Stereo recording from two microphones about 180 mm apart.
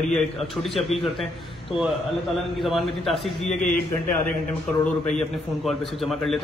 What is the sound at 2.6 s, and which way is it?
A man's voice, centre (ahead or behind).